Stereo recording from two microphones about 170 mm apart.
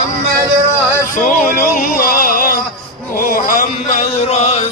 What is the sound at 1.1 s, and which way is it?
Speech, 50° left (ahead or behind).